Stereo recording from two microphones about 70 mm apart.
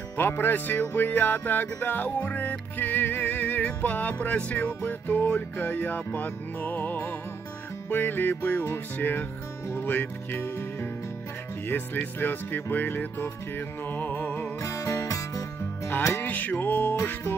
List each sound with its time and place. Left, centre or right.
0.2 s music: left
11.6 s speech: left
12.2 s music: left
14.6 s music: left
16.0 s music: left
16.9 s music: left